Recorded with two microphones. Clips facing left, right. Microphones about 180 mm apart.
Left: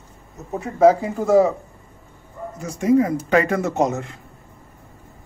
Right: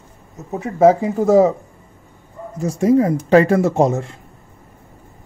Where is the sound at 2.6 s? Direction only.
35° right (ahead or behind).